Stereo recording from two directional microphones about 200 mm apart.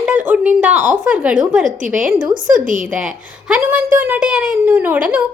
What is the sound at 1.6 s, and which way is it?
A woman's voice, 40° right (ahead or behind).